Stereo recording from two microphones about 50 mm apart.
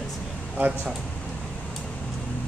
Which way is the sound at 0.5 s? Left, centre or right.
Right.